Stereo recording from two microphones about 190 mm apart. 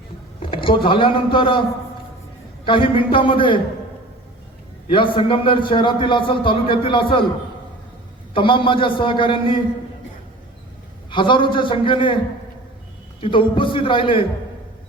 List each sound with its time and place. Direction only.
0.3 s speech: 25° left (ahead or behind)
2.6 s a man's voice: 25° left (ahead or behind)
4.9 s a man's voice: 25° left (ahead or behind)
8.3 s a man's voice: 25° left (ahead or behind)
11.1 s a man's voice: 25° left (ahead or behind)
13.2 s a man's voice: 25° left (ahead or behind)